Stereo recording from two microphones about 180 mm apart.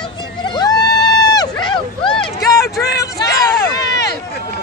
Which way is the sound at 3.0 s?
20° left (ahead or behind).